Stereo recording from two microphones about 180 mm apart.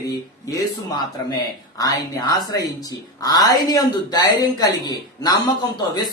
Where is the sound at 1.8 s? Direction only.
20° left (ahead or behind).